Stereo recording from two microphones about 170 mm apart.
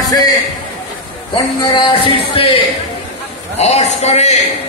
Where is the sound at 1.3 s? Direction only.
25° left (ahead or behind).